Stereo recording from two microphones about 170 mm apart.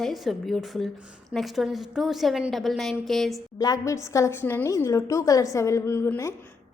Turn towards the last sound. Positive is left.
turn(degrees=15)  # may be behind; listen again after turning